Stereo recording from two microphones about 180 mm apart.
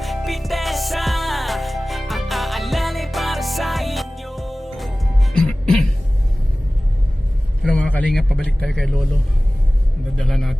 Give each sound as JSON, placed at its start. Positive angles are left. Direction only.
{"t": 0.0, "sound": "music", "side_deg": 0}
{"t": 7.6, "sound": "a man's voice", "side_deg": 5}
{"t": 10.2, "sound": "speech", "side_deg": 0}